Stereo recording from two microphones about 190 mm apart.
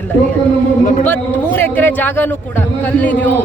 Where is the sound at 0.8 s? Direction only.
40° left (ahead or behind).